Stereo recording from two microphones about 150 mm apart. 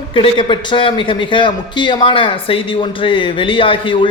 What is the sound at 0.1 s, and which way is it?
A man's voice, 35° left (ahead or behind).